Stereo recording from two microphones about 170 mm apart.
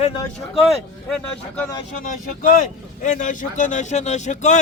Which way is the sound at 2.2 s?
45° left (ahead or behind).